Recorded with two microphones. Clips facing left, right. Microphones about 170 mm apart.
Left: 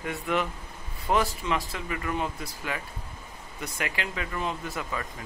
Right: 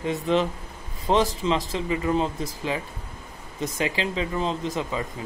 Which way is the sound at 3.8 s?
25° right (ahead or behind).